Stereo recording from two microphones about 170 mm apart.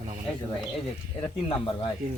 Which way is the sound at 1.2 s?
30° left (ahead or behind).